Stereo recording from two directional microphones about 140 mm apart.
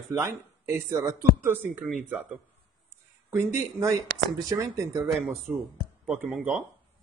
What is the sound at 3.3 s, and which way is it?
A man's voice, 20° right (ahead or behind).